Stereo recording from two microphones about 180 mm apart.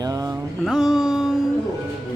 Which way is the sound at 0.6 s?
Centre (ahead or behind).